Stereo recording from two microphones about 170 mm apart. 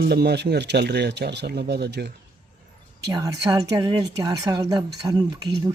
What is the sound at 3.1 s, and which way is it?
Speech, 20° right (ahead or behind).